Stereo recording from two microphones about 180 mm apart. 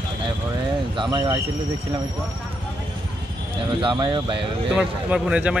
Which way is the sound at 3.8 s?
25° right (ahead or behind).